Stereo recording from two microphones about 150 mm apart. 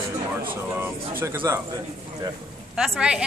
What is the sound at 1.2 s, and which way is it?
Speech, 15° right (ahead or behind).